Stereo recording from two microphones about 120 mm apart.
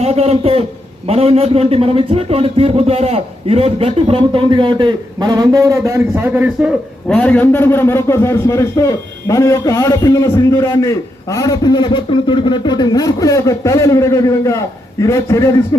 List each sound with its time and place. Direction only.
0.0 s a man's voice: 60° right (ahead or behind); by 6.7 s 10° right (ahead or behind)
7.1 s a man's voice: 10° left (ahead or behind)